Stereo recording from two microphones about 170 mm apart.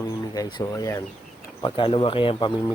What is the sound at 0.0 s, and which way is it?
Speech, 25° left (ahead or behind).